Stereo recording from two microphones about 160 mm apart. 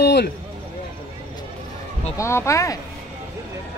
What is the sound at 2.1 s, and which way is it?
Speech, 15° left (ahead or behind).